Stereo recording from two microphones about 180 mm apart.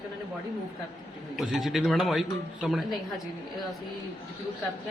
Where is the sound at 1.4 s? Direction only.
Centre (ahead or behind).